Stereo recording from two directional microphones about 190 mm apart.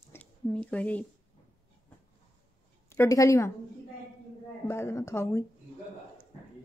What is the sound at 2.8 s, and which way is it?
Speech, 15° left (ahead or behind).